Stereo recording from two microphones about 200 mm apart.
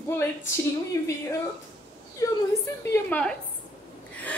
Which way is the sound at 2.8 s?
10° left (ahead or behind).